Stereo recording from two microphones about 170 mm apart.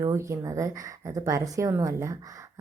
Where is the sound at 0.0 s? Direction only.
15° right (ahead or behind).